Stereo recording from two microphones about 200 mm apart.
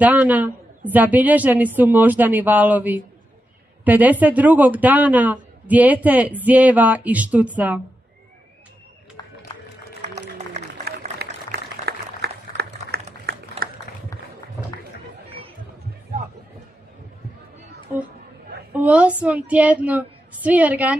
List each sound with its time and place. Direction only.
0.0 s speech: 10° right (ahead or behind)
10.9 s a sound: 55° right (ahead or behind)
18.7 s a woman's voice: 10° right (ahead or behind)